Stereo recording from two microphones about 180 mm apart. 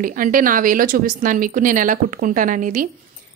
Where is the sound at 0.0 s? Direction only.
50° right (ahead or behind).